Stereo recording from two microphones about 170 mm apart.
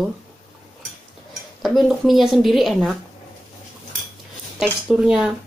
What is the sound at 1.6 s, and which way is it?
A woman's voice, centre (ahead or behind).